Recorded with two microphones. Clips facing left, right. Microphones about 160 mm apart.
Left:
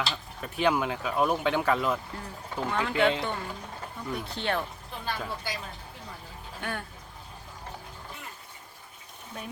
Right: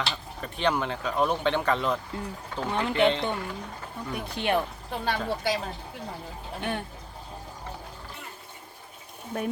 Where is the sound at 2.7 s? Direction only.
20° right (ahead or behind).